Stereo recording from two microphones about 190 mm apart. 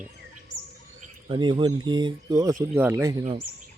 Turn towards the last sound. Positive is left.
turn(degrees=-15)  # may be behind; listen again after turning